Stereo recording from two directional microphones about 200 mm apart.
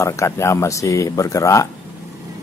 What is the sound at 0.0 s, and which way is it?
Speech, 15° left (ahead or behind).